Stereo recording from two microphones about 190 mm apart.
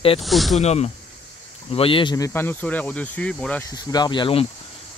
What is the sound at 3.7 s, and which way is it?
Speech, 20° left (ahead or behind).